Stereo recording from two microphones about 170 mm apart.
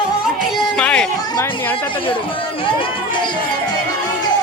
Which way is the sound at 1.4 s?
15° left (ahead or behind).